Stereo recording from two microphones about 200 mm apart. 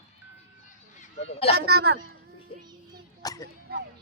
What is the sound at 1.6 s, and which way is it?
Speech, 55° right (ahead or behind).